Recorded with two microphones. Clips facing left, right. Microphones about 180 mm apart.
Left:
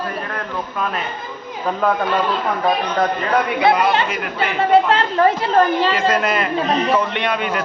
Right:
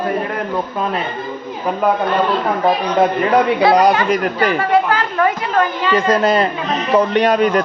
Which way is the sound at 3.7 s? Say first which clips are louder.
Right 3 dB; 40° right (ahead or behind).